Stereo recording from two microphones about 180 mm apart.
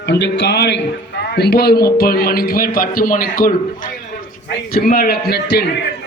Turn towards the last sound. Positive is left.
turn(degrees=65)  # may be behind; listen again after turning